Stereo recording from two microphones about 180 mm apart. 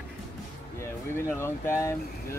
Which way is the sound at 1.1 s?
15° left (ahead or behind).